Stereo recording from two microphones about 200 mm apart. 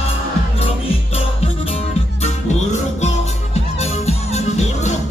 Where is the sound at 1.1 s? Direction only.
30° left (ahead or behind).